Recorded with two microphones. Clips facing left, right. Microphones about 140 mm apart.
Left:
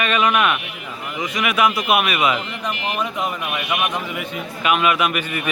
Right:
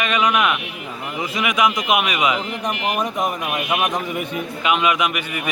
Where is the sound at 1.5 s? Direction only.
15° right (ahead or behind).